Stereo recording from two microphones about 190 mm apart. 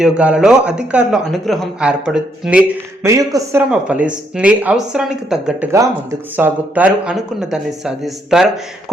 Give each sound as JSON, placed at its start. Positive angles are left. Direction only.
{"t": 0.0, "sound": "a man's voice", "side_deg": -5}
{"t": 3.7, "sound": "a man's voice", "side_deg": -5}
{"t": 5.7, "sound": "a man's voice", "side_deg": -15}